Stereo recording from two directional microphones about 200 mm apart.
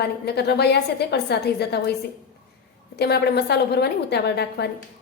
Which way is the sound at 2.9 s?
55° left (ahead or behind).